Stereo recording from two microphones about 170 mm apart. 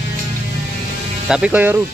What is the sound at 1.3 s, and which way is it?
Speech, 5° right (ahead or behind).